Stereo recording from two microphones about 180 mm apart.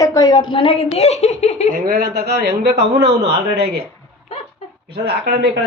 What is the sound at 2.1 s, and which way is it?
A man's voice, 65° right (ahead or behind).